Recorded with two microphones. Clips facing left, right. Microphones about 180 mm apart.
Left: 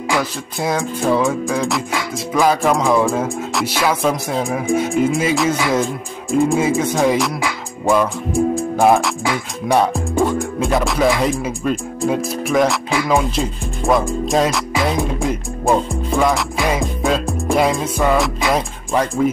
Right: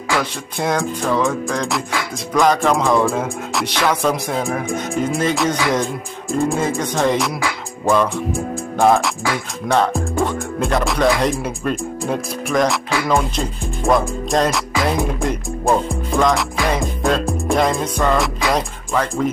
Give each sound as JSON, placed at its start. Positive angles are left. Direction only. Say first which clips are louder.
{"t": 0.2, "sound": "speech", "louder": "left 1 dB", "side_deg": 0}
{"t": 8.7, "sound": "speech", "louder": "right 1 dB", "side_deg": 15}
{"t": 9.9, "sound": "speech", "louder": "left 3 dB", "side_deg": 0}